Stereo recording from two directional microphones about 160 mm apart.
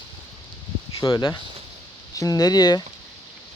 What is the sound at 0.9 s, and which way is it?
Speech, 25° left (ahead or behind).